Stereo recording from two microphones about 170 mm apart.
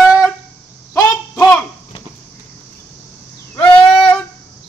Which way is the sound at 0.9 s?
15° left (ahead or behind).